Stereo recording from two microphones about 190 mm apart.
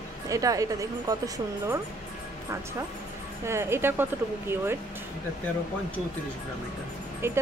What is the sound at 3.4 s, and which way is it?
A woman's voice, 15° right (ahead or behind).